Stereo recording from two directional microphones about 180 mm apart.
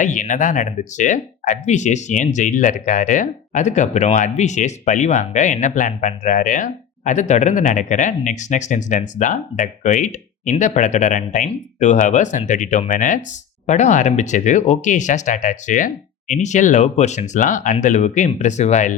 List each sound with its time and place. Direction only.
0.0 s speech: 45° left (ahead or behind)